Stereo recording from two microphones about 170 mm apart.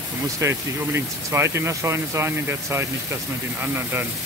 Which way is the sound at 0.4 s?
15° right (ahead or behind).